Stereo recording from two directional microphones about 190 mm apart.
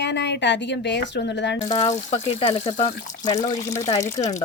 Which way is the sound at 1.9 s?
35° left (ahead or behind).